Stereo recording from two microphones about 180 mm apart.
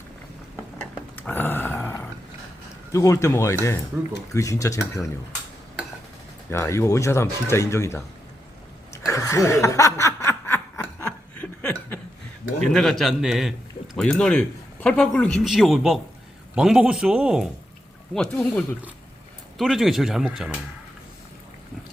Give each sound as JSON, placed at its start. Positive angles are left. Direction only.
{"t": 1.1, "sound": "a sound", "side_deg": 10}
{"t": 2.9, "sound": "speech", "side_deg": 15}
{"t": 3.9, "sound": "speech", "side_deg": -10}
{"t": 4.4, "sound": "speech", "side_deg": 15}
{"t": 6.5, "sound": "speech", "side_deg": 15}
{"t": 8.9, "sound": "snicker", "side_deg": 15}
{"t": 11.3, "sound": "chuckle", "side_deg": 10}
{"t": 12.7, "sound": "speech", "side_deg": 0}